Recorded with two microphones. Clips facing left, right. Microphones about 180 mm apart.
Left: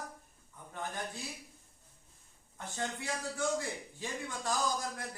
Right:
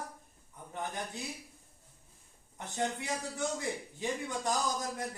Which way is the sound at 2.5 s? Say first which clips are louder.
Right 4 dB; 20° right (ahead or behind).